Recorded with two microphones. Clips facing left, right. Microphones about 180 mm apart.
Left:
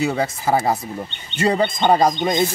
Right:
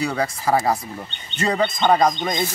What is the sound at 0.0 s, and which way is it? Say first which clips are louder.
Speech: left 2 dB; 25° left (ahead or behind).